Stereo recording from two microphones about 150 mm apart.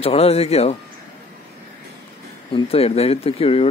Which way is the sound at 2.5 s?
40° left (ahead or behind).